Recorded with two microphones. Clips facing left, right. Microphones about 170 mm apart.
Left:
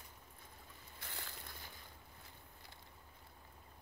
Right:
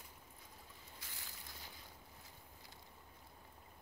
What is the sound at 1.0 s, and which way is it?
Boat, 60° left (ahead or behind).